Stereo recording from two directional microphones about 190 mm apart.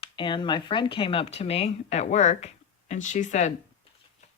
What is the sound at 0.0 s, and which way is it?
Speech, 25° left (ahead or behind).